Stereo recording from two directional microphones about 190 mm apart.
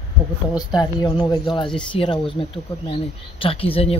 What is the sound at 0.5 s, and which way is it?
Speech, 20° left (ahead or behind).